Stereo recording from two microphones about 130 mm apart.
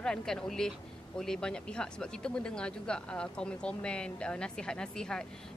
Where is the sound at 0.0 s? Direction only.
5° left (ahead or behind).